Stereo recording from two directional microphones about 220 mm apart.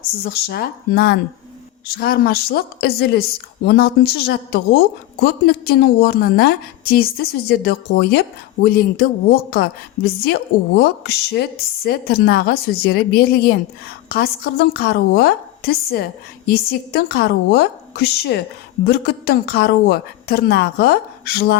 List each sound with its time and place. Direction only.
0.2 s a woman's voice: 45° left (ahead or behind)